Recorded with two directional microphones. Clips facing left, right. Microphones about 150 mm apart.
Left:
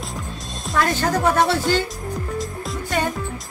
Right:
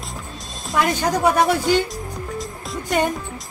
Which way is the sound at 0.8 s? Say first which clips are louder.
Right 1 dB; 15° right (ahead or behind).